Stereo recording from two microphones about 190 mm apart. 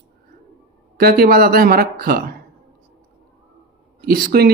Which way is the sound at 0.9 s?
50° right (ahead or behind).